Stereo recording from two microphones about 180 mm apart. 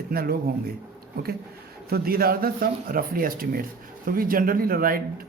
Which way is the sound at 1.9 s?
55° right (ahead or behind).